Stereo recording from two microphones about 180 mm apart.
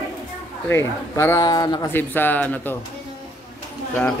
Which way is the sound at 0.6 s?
15° left (ahead or behind).